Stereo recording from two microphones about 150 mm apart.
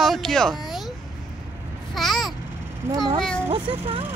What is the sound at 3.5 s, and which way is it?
Speech, 35° right (ahead or behind).